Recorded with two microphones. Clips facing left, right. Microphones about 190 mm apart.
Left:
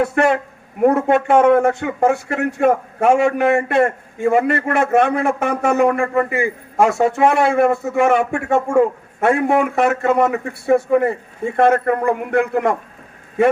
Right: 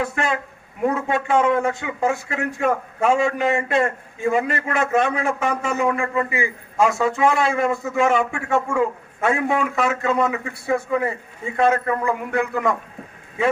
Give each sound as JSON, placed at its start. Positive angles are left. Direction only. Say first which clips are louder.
{"t": 0.0, "sound": "speech", "louder": "left 8 dB", "side_deg": 60}
{"t": 0.8, "sound": "speech", "louder": "left 7 dB", "side_deg": 50}